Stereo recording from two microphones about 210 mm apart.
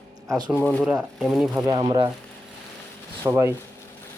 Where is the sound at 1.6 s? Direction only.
20° right (ahead or behind).